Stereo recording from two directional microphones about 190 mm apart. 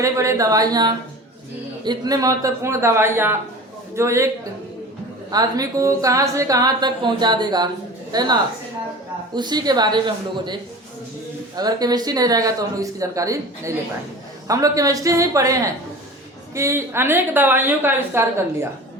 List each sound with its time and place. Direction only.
0.0 s a woman's voice: 15° right (ahead or behind)
5.3 s a woman's voice: 20° right (ahead or behind)
11.5 s a woman's voice: 20° right (ahead or behind)